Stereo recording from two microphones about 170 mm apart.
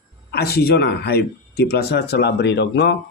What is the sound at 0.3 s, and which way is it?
Speech, 65° left (ahead or behind).